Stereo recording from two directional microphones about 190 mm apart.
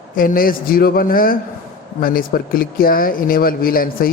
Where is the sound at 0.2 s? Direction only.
50° left (ahead or behind).